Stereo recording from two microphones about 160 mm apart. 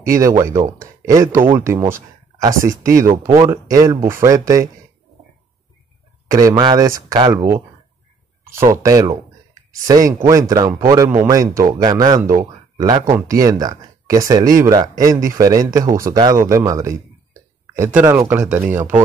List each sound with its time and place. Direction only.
0.0 s speech: 20° right (ahead or behind)
6.3 s speech: 20° right (ahead or behind)
8.5 s speech: 15° right (ahead or behind)